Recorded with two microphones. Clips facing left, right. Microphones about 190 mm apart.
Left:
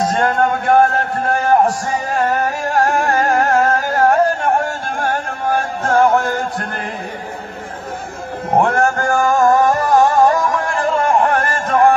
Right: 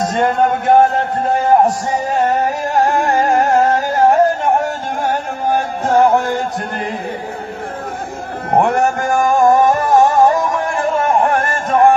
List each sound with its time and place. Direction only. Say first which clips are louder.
0.2 s a sound: right 2 dB; 20° right (ahead or behind)
2.1 s carnatic music: right 1 dB; 15° right (ahead or behind)
5.9 s music: right 1 dB; 15° right (ahead or behind)
8.5 s music: right 1 dB; 15° right (ahead or behind)